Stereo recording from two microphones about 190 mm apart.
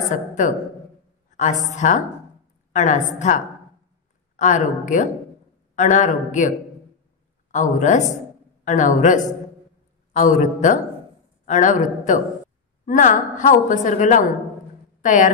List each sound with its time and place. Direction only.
0.1 s a woman's voice: 40° left (ahead or behind)
7.5 s a woman's voice: 40° left (ahead or behind)